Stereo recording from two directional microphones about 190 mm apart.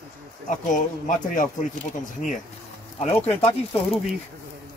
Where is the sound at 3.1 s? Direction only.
30° left (ahead or behind).